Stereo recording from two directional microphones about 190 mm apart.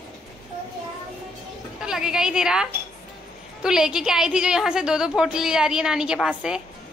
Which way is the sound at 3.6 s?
5° right (ahead or behind).